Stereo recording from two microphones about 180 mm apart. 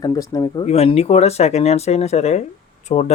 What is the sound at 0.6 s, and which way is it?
Speech, 35° left (ahead or behind).